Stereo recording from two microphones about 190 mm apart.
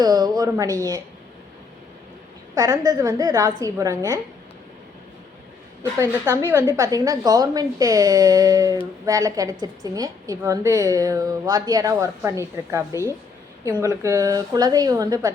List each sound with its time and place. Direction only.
0.0 s a woman's voice: 20° right (ahead or behind)
2.6 s a woman's voice: 20° right (ahead or behind)
5.8 s a woman's voice: 15° right (ahead or behind)